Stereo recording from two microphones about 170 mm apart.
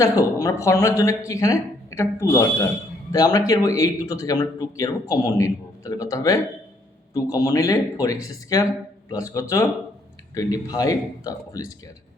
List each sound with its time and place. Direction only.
0.0 s speech: 20° left (ahead or behind)